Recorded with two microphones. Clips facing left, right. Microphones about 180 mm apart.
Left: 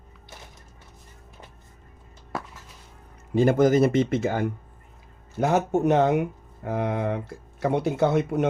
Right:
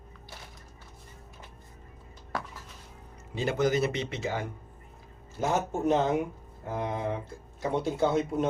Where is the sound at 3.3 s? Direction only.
50° left (ahead or behind).